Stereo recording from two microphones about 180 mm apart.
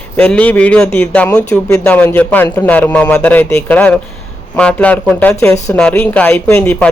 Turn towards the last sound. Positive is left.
turn(degrees=10)  # may be behind; listen again after turning